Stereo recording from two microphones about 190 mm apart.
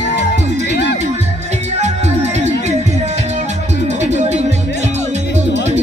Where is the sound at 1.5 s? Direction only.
35° right (ahead or behind).